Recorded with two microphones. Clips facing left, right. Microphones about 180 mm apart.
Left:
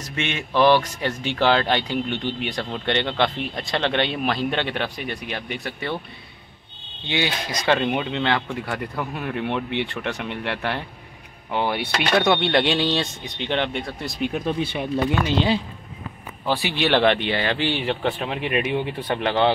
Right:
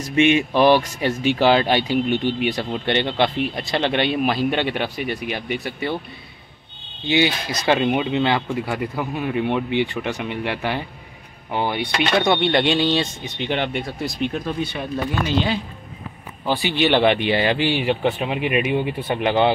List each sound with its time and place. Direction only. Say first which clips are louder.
0.0 s speech: right 12 dB; 15° right (ahead or behind)
7.6 s speech: right 3 dB; 10° right (ahead or behind)
14.3 s speech: left 1 dB; 25° left (ahead or behind)
16.4 s speech: right 3 dB; centre (ahead or behind)